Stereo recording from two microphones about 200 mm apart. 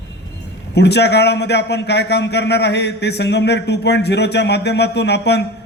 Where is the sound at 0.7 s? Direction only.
55° left (ahead or behind).